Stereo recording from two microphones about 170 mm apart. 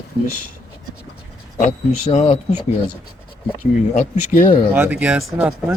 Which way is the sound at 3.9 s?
50° left (ahead or behind).